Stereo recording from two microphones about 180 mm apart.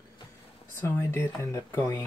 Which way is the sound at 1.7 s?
15° left (ahead or behind).